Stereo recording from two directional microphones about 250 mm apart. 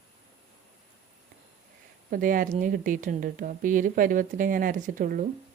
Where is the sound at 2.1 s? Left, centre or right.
Right.